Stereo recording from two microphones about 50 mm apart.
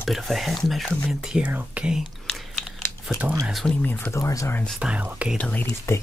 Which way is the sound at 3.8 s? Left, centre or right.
Left.